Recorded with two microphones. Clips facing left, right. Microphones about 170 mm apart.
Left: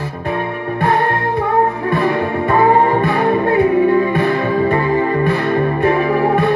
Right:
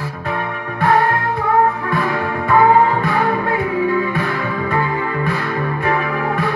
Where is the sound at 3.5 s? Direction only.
65° left (ahead or behind).